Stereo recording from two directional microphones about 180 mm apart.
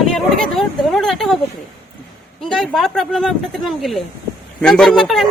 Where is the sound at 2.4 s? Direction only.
Centre (ahead or behind).